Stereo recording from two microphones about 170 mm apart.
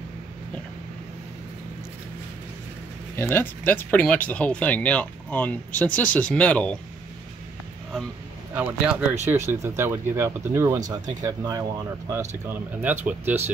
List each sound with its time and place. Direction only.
3.2 s speech: 15° left (ahead or behind)
8.5 s speech: 5° right (ahead or behind)